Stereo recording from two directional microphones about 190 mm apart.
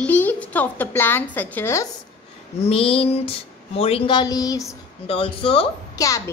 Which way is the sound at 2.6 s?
30° left (ahead or behind).